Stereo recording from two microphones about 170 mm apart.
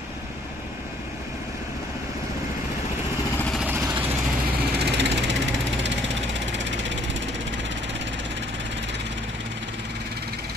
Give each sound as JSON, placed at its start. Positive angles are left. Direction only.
{"t": 3.5, "sound": "vehicle", "side_deg": -10}
{"t": 4.7, "sound": "vehicle", "side_deg": -85}
{"t": 6.4, "sound": "a sound", "side_deg": -90}